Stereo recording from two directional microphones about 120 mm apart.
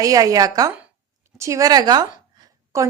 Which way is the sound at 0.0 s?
30° right (ahead or behind).